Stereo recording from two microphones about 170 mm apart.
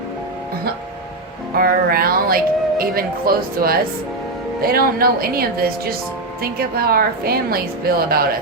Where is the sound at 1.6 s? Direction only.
60° right (ahead or behind).